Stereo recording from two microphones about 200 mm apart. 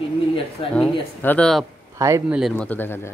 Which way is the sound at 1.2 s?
5° left (ahead or behind).